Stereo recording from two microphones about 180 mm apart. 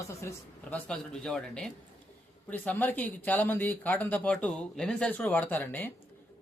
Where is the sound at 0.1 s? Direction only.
15° left (ahead or behind).